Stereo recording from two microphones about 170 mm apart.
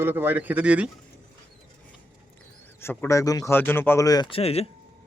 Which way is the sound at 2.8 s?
10° left (ahead or behind).